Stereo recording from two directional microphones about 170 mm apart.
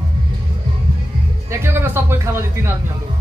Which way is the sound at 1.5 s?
15° right (ahead or behind).